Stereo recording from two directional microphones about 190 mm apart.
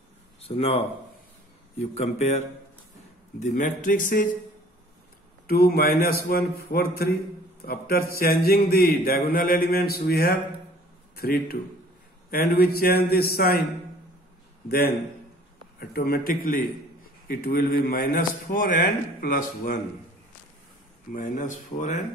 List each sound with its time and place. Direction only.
0.4 s a man's voice: 30° left (ahead or behind); by 4.4 s 45° left (ahead or behind)
5.5 s a man's voice: 55° left (ahead or behind)
15.8 s a man's voice: 55° left (ahead or behind)
21.1 s a man's voice: 45° left (ahead or behind)